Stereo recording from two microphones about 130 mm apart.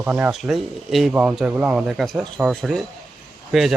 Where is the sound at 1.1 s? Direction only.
15° right (ahead or behind).